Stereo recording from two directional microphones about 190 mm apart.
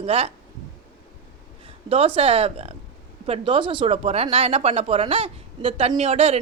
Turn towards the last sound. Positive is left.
turn(degrees=-30)  # may be behind; listen again after turning